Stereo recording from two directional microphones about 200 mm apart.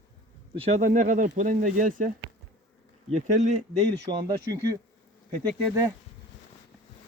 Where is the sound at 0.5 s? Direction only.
30° right (ahead or behind).